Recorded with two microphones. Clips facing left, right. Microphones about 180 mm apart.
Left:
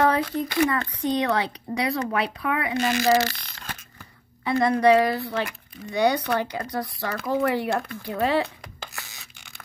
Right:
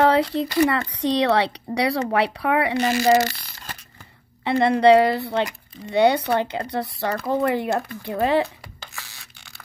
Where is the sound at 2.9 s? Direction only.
15° right (ahead or behind).